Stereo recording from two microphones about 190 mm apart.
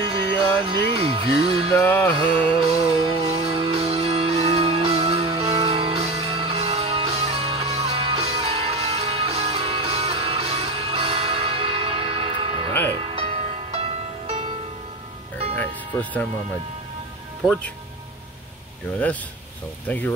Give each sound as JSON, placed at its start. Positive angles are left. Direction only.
{"t": 0.0, "sound": "music", "side_deg": -25}
{"t": 1.8, "sound": "music", "side_deg": 10}
{"t": 2.2, "sound": "music", "side_deg": -30}
{"t": 15.5, "sound": "music", "side_deg": 10}
{"t": 19.9, "sound": "music", "side_deg": 10}